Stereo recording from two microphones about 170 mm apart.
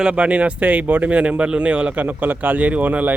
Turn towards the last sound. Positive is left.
turn(degrees=-10)  # may be behind; listen again after turning